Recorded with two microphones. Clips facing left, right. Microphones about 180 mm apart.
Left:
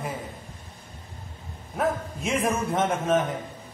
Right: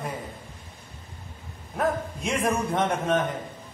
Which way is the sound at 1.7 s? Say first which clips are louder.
Even; centre (ahead or behind).